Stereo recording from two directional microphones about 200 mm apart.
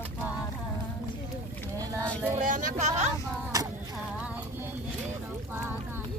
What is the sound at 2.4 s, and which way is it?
Speech, 40° right (ahead or behind).